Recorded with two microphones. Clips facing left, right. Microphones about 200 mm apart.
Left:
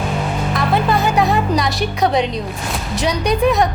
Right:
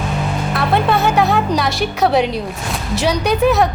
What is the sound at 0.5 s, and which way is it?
A woman's voice, centre (ahead or behind).